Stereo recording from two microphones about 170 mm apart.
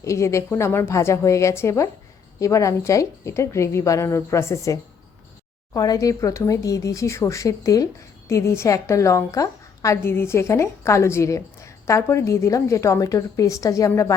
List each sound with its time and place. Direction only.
0.0 s a woman's voice: 15° left (ahead or behind)